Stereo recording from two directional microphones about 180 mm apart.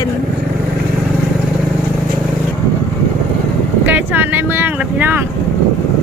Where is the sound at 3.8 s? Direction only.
10° right (ahead or behind).